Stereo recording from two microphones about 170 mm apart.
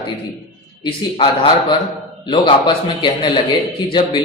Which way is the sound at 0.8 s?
25° left (ahead or behind).